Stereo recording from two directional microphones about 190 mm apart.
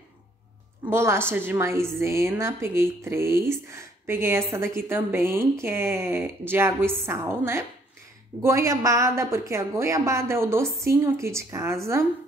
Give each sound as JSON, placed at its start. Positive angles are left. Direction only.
{"t": 0.8, "sound": "a woman's voice", "side_deg": -15}